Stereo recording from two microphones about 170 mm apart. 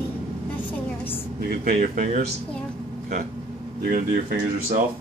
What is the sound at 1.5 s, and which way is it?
Speech, 65° right (ahead or behind).